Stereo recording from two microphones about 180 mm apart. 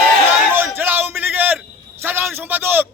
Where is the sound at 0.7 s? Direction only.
10° right (ahead or behind).